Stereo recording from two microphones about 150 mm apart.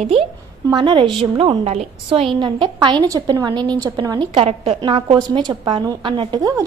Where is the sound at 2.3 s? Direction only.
35° right (ahead or behind).